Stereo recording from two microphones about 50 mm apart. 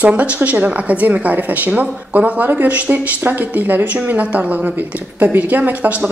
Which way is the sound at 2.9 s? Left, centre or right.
Right.